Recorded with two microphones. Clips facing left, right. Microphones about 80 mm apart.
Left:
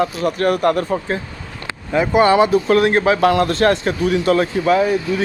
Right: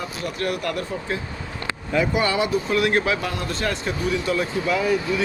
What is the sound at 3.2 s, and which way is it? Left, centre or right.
Speech, left.